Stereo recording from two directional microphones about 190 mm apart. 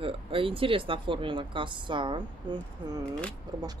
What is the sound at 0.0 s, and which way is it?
Speech, 30° right (ahead or behind).